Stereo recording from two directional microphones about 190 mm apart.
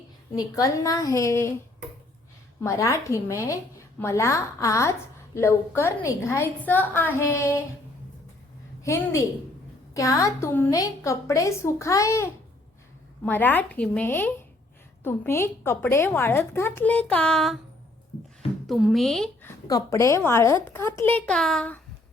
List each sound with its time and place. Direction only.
0.3 s a woman's voice: 20° left (ahead or behind)
2.6 s a woman's voice: 15° left (ahead or behind)
8.8 s a woman's voice: 15° left (ahead or behind)
18.7 s speech: centre (ahead or behind)
19.6 s a woman's voice: 20° left (ahead or behind)